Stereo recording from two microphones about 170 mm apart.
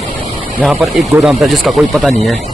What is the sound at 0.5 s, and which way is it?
Speech, centre (ahead or behind).